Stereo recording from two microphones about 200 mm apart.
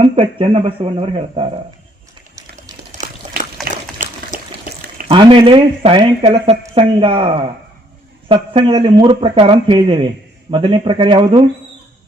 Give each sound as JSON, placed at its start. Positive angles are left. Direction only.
{"t": 0.0, "sound": "speech", "side_deg": -25}
{"t": 2.9, "sound": "water", "side_deg": -40}
{"t": 5.0, "sound": "speech", "side_deg": -25}